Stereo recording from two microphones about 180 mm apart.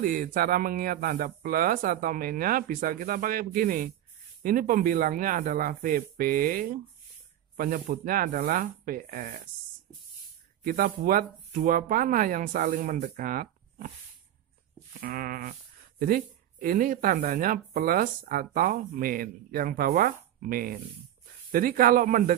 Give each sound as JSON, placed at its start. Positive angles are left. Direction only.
{"t": 0.0, "sound": "speech", "side_deg": -50}
{"t": 10.6, "sound": "speech", "side_deg": -50}
{"t": 15.0, "sound": "sheep", "side_deg": -55}
{"t": 16.0, "sound": "speech", "side_deg": -50}